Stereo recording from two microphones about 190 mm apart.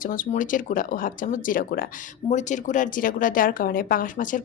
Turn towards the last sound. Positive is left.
turn(degrees=45)  # may be behind; listen again after turning